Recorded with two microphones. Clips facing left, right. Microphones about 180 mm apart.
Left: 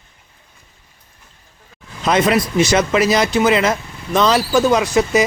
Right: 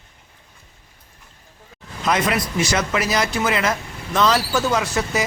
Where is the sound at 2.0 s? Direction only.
25° left (ahead or behind).